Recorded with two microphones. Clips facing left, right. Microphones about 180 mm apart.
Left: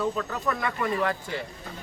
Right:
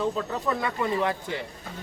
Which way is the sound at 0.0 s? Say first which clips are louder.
Right 1 dB; 20° right (ahead or behind).